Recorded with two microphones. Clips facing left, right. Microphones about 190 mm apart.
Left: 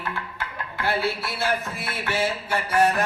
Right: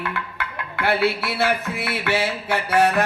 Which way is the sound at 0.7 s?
65° right (ahead or behind).